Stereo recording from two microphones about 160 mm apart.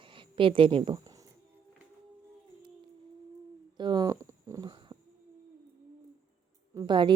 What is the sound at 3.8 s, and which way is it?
Speech, 25° right (ahead or behind).